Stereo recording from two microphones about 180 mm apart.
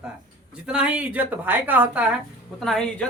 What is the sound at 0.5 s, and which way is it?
Speech, 5° right (ahead or behind).